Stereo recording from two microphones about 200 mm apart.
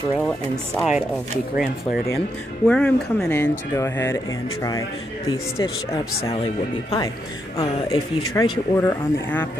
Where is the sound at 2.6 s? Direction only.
5° left (ahead or behind).